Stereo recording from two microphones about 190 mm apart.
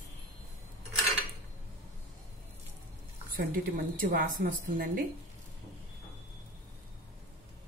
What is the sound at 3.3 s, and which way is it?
A woman's voice, 50° right (ahead or behind).